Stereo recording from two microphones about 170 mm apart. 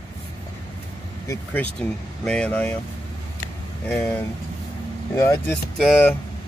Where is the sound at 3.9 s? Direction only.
10° left (ahead or behind).